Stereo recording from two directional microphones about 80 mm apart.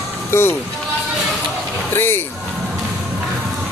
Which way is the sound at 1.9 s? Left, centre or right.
Left.